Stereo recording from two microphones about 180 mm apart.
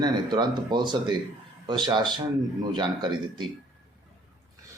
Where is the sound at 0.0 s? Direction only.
25° right (ahead or behind).